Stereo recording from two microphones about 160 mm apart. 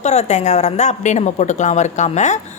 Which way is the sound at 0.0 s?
45° left (ahead or behind).